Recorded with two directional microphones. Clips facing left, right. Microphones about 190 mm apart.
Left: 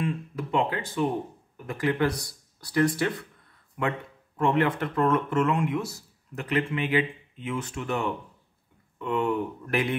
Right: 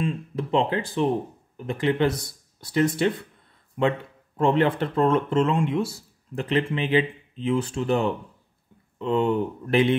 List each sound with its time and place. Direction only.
0.0 s speech: 30° right (ahead or behind)
4.4 s speech: 30° right (ahead or behind)